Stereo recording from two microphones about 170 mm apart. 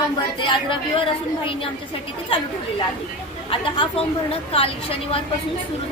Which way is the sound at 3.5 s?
30° left (ahead or behind).